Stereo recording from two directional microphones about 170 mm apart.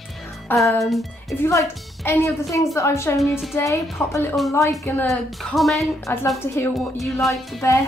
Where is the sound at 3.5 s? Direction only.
15° left (ahead or behind).